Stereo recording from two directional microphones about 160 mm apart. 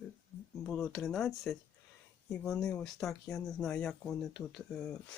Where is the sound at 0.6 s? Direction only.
Centre (ahead or behind).